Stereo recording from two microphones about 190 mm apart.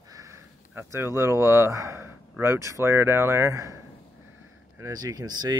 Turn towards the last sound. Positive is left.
turn(degrees=-20)  # may be behind; listen again after turning